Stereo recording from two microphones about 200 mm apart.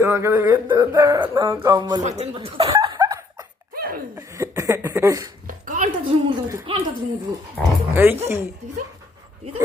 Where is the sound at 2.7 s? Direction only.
20° right (ahead or behind).